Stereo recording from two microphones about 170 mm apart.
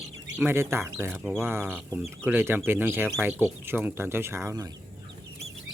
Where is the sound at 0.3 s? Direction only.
15° right (ahead or behind).